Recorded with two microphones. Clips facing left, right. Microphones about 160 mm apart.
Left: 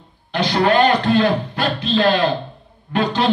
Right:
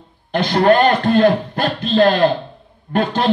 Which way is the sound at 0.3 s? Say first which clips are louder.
Right 3 dB; 50° right (ahead or behind).